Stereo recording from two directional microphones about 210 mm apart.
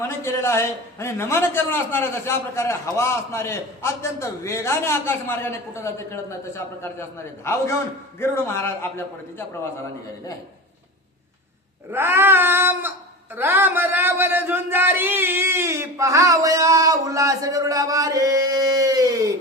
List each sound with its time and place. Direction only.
0.2 s a man's voice: 10° left (ahead or behind)
11.9 s a man's voice: 10° right (ahead or behind)